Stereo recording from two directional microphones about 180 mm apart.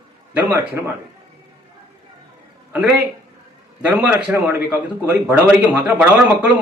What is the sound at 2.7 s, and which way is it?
A man's voice, 5° right (ahead or behind).